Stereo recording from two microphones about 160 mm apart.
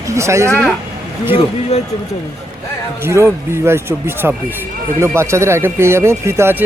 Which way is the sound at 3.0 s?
15° right (ahead or behind).